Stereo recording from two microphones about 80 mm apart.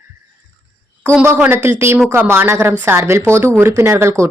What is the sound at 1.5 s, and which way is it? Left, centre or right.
Speech, right.